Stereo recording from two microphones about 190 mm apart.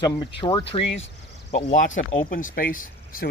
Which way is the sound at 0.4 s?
25° left (ahead or behind).